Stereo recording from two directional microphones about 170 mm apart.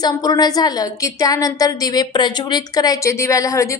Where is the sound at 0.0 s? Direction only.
25° left (ahead or behind).